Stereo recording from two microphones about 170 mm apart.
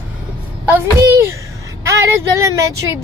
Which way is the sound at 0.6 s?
15° right (ahead or behind).